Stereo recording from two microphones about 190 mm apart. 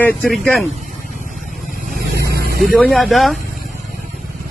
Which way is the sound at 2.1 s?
55° right (ahead or behind).